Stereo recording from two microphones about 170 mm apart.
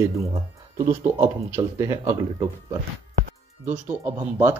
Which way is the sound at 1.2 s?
15° right (ahead or behind).